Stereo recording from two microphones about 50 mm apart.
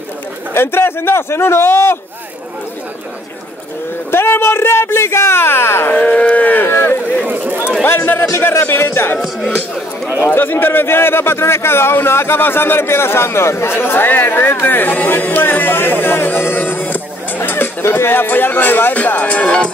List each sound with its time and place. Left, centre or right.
0.6 s a man's voice: left
4.1 s speech: left
5.9 s speech: left
6.2 s livestock: left
6.7 s a sound: left
7.2 s a sound: right
8.4 s a man's voice: left
9.2 s speech: centre
10.0 s a man's voice: left
10.3 s a man's voice: left